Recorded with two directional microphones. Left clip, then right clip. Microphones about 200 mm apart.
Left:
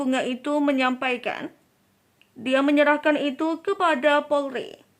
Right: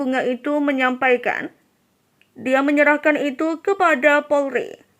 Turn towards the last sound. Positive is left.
turn(degrees=-10)  # may be behind; listen again after turning